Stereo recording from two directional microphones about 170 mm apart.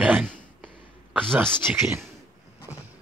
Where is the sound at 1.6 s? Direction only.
15° right (ahead or behind).